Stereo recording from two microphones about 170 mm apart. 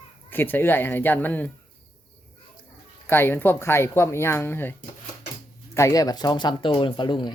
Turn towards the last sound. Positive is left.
turn(degrees=25)  # may be behind; listen again after turning